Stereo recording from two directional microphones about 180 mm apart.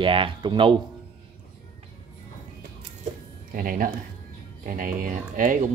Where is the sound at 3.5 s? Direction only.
50° right (ahead or behind).